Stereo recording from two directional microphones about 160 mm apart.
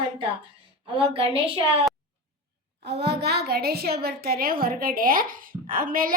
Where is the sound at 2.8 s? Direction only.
90° right.